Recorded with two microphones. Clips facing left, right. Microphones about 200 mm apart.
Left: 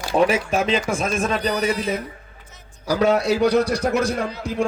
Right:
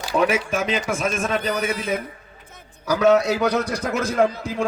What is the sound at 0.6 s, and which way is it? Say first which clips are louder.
Speech: left 2 dB; 35° left (ahead or behind).